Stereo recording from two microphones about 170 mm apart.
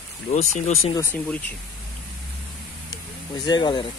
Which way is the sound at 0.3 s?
45° left (ahead or behind).